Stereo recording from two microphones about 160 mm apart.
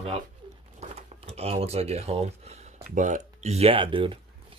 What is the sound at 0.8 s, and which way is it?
Crumpling, 45° right (ahead or behind).